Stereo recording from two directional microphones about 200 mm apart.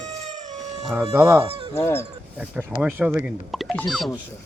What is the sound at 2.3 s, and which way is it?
Speech, 5° right (ahead or behind).